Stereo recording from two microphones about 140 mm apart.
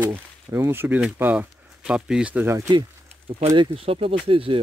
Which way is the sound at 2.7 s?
30° right (ahead or behind).